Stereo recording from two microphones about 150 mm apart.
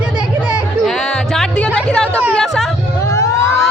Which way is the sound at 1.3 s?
5° left (ahead or behind).